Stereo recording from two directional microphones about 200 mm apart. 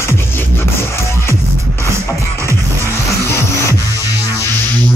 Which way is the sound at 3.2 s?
15° left (ahead or behind).